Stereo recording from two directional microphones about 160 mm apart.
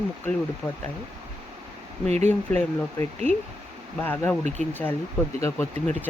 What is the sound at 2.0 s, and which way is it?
Speech, 45° right (ahead or behind).